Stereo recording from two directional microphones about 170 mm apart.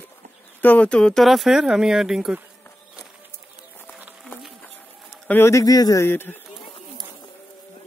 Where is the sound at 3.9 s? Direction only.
10° right (ahead or behind).